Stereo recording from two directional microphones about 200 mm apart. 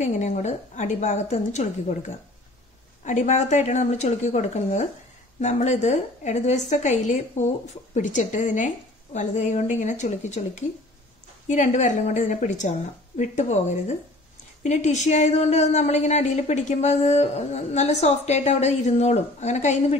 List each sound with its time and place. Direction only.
0.0 s speech: 35° left (ahead or behind)